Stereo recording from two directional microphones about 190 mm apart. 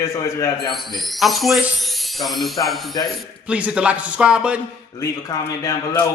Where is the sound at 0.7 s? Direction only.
Centre (ahead or behind).